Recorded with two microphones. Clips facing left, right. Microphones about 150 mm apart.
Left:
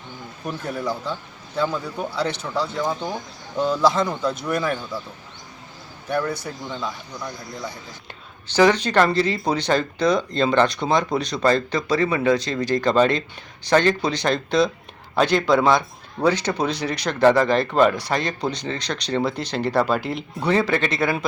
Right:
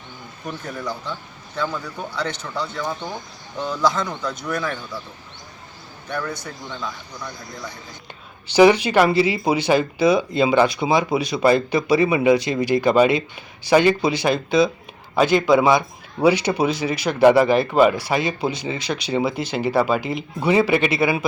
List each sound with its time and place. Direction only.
0.4 s speech: 5° left (ahead or behind)
1.6 s speech: 25° left (ahead or behind)
6.2 s speech: 30° left (ahead or behind)
8.4 s speech: 10° right (ahead or behind)